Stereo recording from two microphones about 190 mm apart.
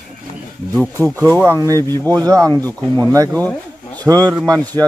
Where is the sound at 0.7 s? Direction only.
5° left (ahead or behind).